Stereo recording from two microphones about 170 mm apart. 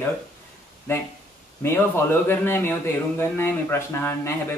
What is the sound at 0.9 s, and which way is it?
A man's voice, 15° left (ahead or behind).